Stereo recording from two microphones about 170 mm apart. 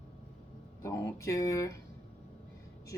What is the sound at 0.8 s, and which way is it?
Speech, 20° left (ahead or behind).